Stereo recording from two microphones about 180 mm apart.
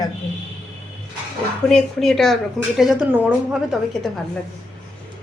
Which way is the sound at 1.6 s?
Centre (ahead or behind).